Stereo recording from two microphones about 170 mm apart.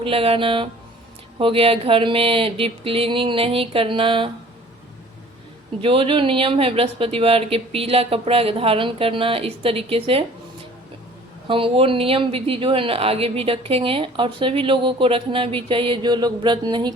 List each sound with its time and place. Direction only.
0.0 s speech: 35° right (ahead or behind)
5.8 s speech: 30° right (ahead or behind)
11.4 s speech: 30° right (ahead or behind)